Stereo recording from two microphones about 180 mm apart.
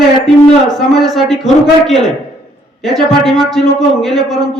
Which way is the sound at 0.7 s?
Centre (ahead or behind).